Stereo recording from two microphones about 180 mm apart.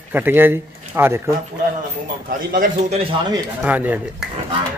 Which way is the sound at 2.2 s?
50° right (ahead or behind).